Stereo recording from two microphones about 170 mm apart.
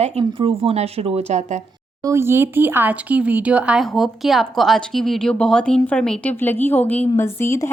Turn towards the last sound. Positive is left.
turn(degrees=15)  # may be behind; listen again after turning